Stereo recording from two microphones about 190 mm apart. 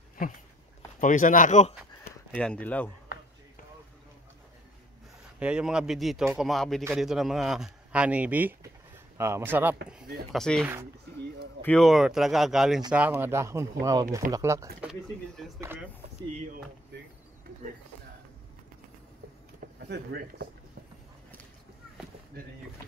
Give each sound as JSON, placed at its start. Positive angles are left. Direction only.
{"t": 1.0, "sound": "speech", "side_deg": 40}
{"t": 2.0, "sound": "speech", "side_deg": 5}
{"t": 5.4, "sound": "speech", "side_deg": -5}
{"t": 10.3, "sound": "speech", "side_deg": 5}
{"t": 10.6, "sound": "speech", "side_deg": -10}
{"t": 11.6, "sound": "speech", "side_deg": 5}
{"t": 14.9, "sound": "speech", "side_deg": 0}
{"t": 15.6, "sound": "a sound", "side_deg": -10}
{"t": 19.6, "sound": "speech", "side_deg": -55}